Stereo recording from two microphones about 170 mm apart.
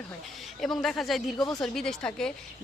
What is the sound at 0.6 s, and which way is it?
A woman's voice, centre (ahead or behind).